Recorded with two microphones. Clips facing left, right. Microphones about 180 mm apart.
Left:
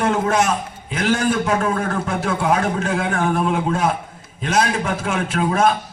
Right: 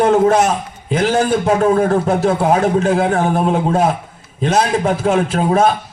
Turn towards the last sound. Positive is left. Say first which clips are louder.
# right 4 dB
turn(degrees=-35)  # may be behind; listen again after turning